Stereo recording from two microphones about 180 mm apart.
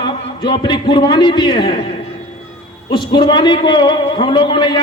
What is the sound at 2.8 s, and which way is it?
A man's voice, 25° left (ahead or behind).